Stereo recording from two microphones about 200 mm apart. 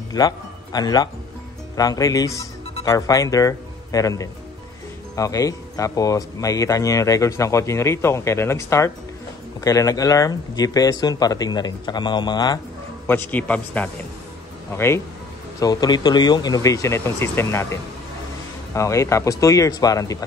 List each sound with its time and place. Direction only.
0.2 s speech: 20° left (ahead or behind)
13.0 s speech: 10° left (ahead or behind)
15.6 s speech: 20° left (ahead or behind)